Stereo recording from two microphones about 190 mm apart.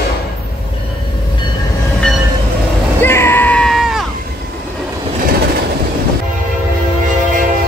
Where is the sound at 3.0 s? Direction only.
10° left (ahead or behind).